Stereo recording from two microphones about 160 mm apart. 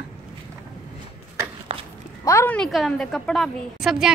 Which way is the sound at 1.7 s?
35° right (ahead or behind).